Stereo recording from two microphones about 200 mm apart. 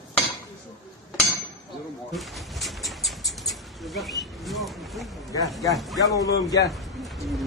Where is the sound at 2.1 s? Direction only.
Centre (ahead or behind).